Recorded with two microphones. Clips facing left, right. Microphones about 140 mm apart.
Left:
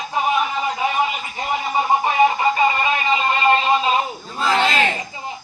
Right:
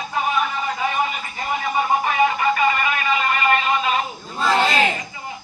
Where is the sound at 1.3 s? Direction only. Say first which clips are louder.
Left 1 dB; 25° left (ahead or behind).